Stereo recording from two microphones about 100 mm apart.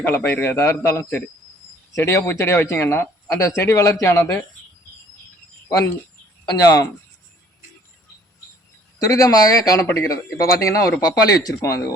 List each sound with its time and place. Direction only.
0.0 s speech: 25° left (ahead or behind)
5.6 s speech: 35° left (ahead or behind)
9.0 s speech: 35° left (ahead or behind)